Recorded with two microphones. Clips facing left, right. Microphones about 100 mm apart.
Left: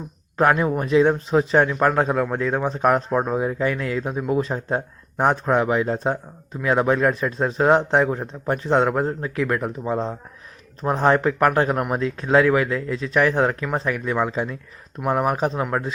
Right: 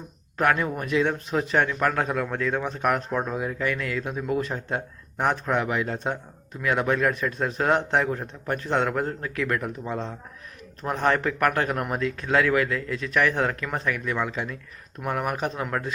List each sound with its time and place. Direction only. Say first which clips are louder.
0.3 s speech: left 5 dB; 25° left (ahead or behind)